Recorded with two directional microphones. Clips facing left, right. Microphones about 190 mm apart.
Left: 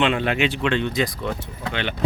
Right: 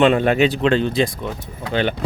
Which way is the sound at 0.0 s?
45° right (ahead or behind).